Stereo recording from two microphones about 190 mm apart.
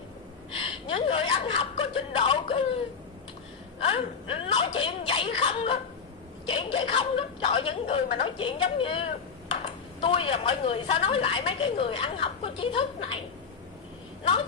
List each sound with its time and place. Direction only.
0.5 s chuckle: 30° left (ahead or behind)
3.8 s whimper: 30° left (ahead or behind)
6.4 s a woman's voice: 30° left (ahead or behind)